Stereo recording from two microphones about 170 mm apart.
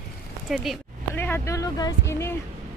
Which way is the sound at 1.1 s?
15° left (ahead or behind).